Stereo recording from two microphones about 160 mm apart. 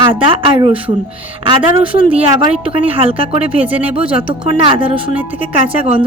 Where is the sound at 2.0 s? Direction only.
35° right (ahead or behind).